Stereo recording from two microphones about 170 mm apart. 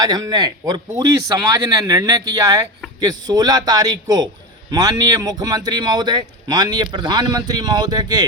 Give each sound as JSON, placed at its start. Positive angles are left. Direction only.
{"t": 0.0, "sound": "speech", "side_deg": -25}